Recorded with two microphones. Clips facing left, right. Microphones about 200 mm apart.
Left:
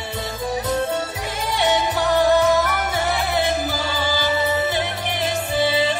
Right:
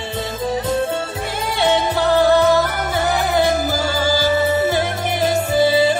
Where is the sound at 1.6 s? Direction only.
30° right (ahead or behind).